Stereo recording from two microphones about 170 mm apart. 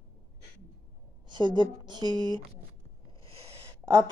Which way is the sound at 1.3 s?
25° right (ahead or behind).